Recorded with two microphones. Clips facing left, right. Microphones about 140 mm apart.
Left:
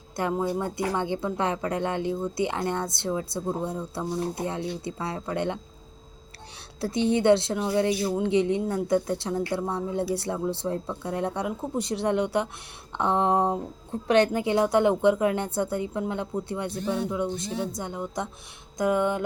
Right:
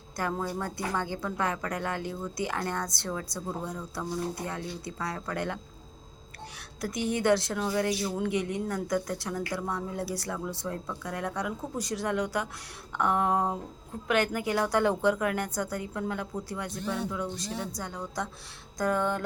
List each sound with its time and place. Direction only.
0.2 s a woman's voice: 20° left (ahead or behind)
6.8 s a woman's voice: 25° left (ahead or behind)
18.8 s music: 15° left (ahead or behind)